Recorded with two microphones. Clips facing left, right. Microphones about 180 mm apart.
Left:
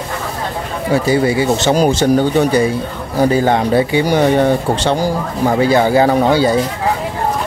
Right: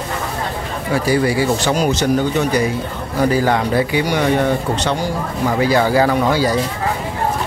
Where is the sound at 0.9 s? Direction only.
25° left (ahead or behind).